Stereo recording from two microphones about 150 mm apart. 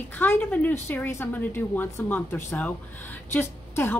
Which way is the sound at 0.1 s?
10° left (ahead or behind).